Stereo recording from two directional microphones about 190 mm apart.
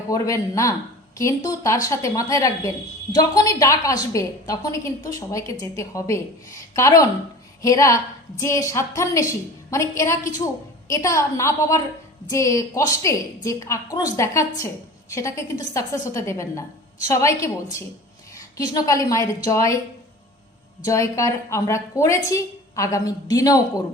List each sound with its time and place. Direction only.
0.1 s a woman's voice: 15° left (ahead or behind)
20.8 s a woman's voice: 15° left (ahead or behind)